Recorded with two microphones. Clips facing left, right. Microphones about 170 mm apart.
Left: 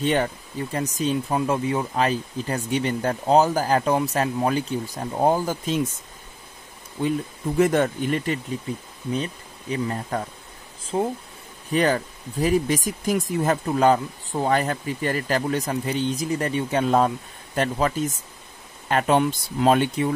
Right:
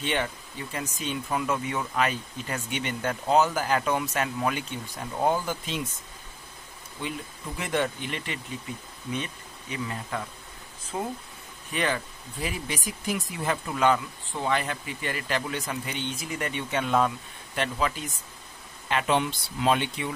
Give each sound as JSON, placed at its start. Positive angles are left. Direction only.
{"t": 0.0, "sound": "speech", "side_deg": 40}
{"t": 7.0, "sound": "speech", "side_deg": 45}
{"t": 11.7, "sound": "speech", "side_deg": 40}